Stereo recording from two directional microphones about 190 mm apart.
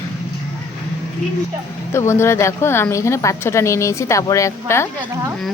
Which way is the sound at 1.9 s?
15° left (ahead or behind).